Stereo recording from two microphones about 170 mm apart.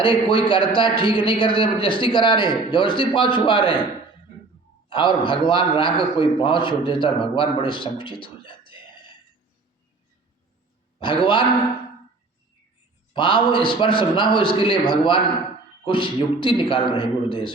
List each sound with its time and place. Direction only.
0.0 s a man's voice: 30° left (ahead or behind)
4.9 s a man's voice: 30° left (ahead or behind)
11.0 s a man's voice: 30° left (ahead or behind)
13.1 s a man's voice: 30° left (ahead or behind)